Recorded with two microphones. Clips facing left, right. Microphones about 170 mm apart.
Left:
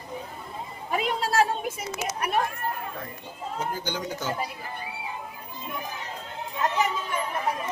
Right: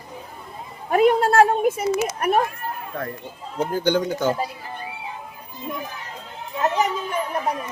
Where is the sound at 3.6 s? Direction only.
60° right (ahead or behind).